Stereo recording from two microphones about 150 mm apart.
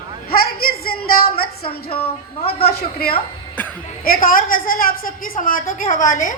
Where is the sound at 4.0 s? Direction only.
75° left (ahead or behind); by 6.3 s 55° left (ahead or behind).